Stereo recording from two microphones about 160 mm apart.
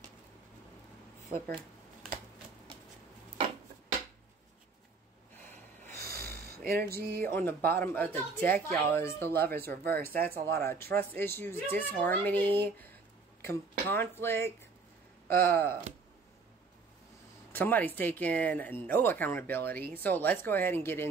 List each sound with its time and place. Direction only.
6.0 s a sound: 70° right (ahead or behind)
7.2 s speech: 15° left (ahead or behind)
17.5 s speech: 10° left (ahead or behind)